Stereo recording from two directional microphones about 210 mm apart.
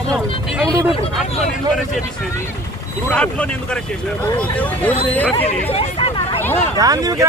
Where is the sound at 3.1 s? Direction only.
5° left (ahead or behind).